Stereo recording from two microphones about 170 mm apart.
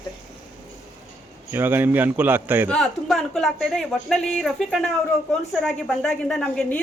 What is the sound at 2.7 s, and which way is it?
Speech, 5° left (ahead or behind).